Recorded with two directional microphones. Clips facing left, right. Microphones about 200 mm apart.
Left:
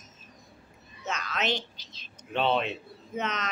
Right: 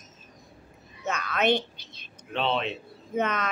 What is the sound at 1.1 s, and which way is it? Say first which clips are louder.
Speech: right 6 dB; 55° right (ahead or behind).